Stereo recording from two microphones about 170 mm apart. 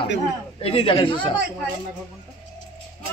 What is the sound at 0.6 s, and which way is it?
Speech, 30° left (ahead or behind).